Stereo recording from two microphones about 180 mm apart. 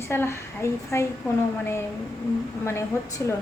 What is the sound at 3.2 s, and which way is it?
Speech, 15° left (ahead or behind).